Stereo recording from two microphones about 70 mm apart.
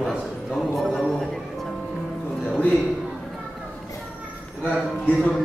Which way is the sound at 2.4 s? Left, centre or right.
Centre.